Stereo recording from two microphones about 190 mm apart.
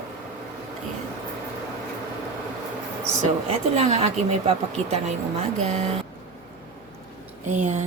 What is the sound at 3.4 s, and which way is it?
A woman's voice, 35° right (ahead or behind).